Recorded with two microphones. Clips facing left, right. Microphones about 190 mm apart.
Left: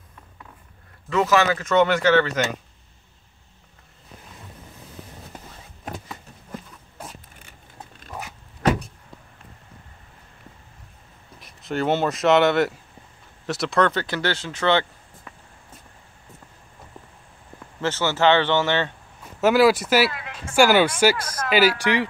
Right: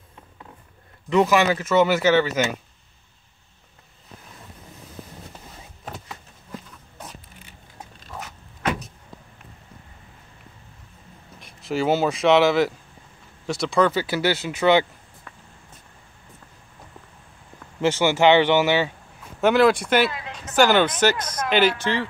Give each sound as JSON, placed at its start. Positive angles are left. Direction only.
{"t": 1.1, "sound": "speech", "side_deg": -15}
{"t": 1.6, "sound": "speech", "side_deg": -5}
{"t": 8.1, "sound": "a sound", "side_deg": 10}
{"t": 11.3, "sound": "speech", "side_deg": 0}
{"t": 17.7, "sound": "speech", "side_deg": -15}
{"t": 19.4, "sound": "speech", "side_deg": 5}
{"t": 20.1, "sound": "speech", "side_deg": -20}
{"t": 20.5, "sound": "speech", "side_deg": 10}